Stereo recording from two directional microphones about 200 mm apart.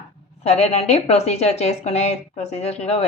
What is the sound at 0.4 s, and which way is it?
A woman's voice, 35° left (ahead or behind).